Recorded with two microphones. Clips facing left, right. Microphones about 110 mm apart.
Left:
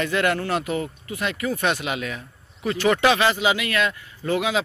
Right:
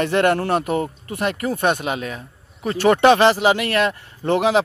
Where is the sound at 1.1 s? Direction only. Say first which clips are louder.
Right 3 dB; 50° right (ahead or behind).